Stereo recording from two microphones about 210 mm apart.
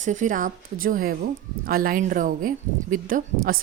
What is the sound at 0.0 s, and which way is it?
Speech, 35° right (ahead or behind).